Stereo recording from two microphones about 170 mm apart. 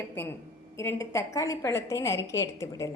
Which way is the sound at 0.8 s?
15° left (ahead or behind).